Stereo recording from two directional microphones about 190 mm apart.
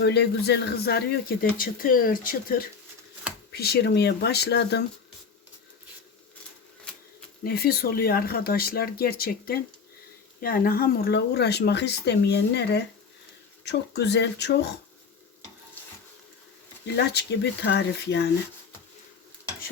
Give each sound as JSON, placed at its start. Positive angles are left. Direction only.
{"t": 0.0, "sound": "speech", "side_deg": 60}
{"t": 7.4, "sound": "speech", "side_deg": 55}
{"t": 16.8, "sound": "speech", "side_deg": 60}